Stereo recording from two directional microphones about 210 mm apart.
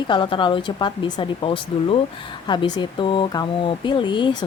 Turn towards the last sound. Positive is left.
turn(degrees=20)  # may be behind; listen again after turning